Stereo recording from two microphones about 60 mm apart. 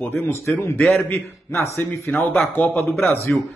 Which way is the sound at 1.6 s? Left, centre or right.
Left.